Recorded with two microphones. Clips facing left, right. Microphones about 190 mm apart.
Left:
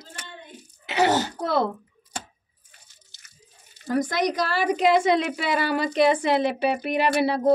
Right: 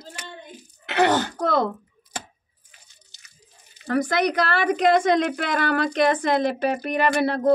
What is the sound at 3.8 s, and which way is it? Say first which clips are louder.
A woman's voice: right 2 dB; 70° right (ahead or behind).